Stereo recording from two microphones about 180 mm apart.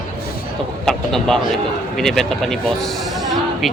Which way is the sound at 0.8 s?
5° left (ahead or behind).